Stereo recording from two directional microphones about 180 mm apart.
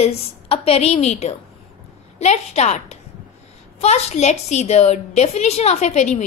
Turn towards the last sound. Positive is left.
turn(degrees=40)  # may be behind; listen again after turning